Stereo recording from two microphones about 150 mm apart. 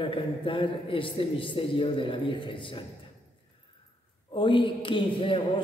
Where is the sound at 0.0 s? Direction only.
35° left (ahead or behind).